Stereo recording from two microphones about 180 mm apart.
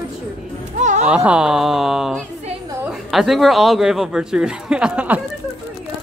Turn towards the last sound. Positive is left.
turn(degrees=-5)  # may be behind; listen again after turning